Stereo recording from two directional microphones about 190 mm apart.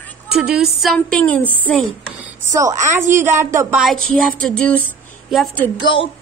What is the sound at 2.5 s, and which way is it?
Speech, 15° right (ahead or behind).